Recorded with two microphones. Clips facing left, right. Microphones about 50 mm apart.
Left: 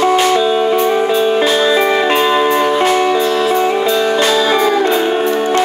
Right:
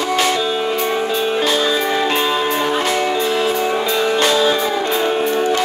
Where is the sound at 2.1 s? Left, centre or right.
Centre.